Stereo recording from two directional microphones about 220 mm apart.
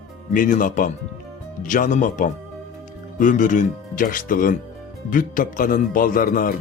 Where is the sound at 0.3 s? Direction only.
35° left (ahead or behind).